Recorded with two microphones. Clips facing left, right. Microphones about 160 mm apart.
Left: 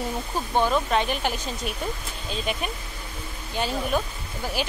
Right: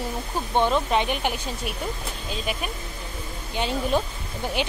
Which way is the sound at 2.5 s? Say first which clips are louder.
Left 1 dB; 5° right (ahead or behind).